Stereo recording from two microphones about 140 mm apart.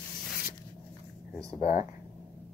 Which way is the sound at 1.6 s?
60° left (ahead or behind).